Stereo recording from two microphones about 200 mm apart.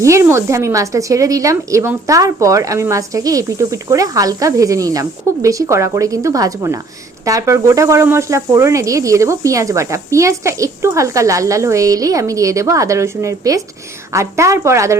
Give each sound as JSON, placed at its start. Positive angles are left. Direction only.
{"t": 0.0, "sound": "speech", "side_deg": -15}